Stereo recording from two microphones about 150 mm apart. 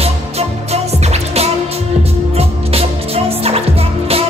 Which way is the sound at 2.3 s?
40° right (ahead or behind).